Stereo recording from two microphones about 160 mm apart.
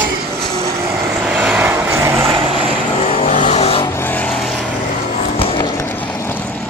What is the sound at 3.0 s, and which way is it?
Vehicle, 40° left (ahead or behind).